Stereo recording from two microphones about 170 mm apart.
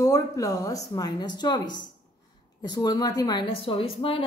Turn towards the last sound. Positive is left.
turn(degrees=30)  # may be behind; listen again after turning